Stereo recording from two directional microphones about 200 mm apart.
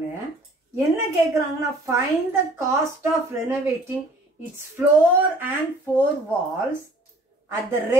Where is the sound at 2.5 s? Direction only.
10° right (ahead or behind).